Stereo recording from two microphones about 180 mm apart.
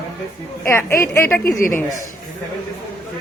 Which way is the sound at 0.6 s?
15° left (ahead or behind).